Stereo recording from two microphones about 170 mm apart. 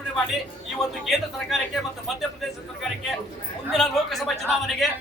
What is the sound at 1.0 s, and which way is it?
A man's voice, centre (ahead or behind).